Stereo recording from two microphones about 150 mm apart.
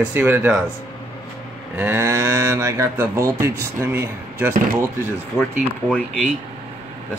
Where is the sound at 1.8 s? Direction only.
15° right (ahead or behind).